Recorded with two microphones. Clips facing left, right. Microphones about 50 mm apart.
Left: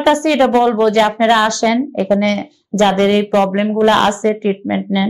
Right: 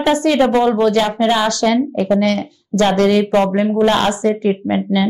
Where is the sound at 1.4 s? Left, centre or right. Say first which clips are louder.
Left 1 dB; left.